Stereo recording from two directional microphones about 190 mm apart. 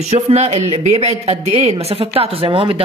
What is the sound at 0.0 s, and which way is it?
A woman's voice, 35° right (ahead or behind).